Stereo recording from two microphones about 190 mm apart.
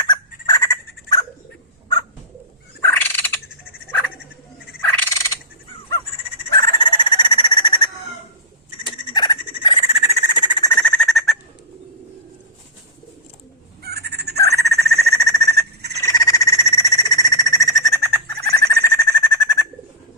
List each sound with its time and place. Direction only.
0.0 s turkey: 20° left (ahead or behind)
2.8 s fowl: 10° left (ahead or behind)
4.8 s fowl: 15° left (ahead or behind)
6.5 s a sound: 25° left (ahead or behind)
10.7 s bird: 5° left (ahead or behind)
13.8 s crow: 55° right (ahead or behind)
14.3 s a sound: 15° left (ahead or behind)
16.0 s frog: 20° left (ahead or behind)